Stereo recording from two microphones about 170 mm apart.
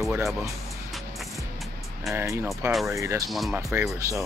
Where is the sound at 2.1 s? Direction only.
15° right (ahead or behind).